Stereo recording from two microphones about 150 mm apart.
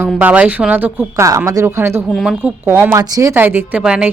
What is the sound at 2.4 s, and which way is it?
Speech, 15° right (ahead or behind).